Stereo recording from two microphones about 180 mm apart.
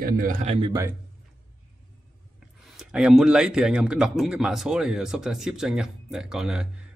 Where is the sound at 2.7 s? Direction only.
5° right (ahead or behind).